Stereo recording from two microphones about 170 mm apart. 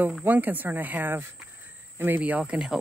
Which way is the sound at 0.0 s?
10° right (ahead or behind).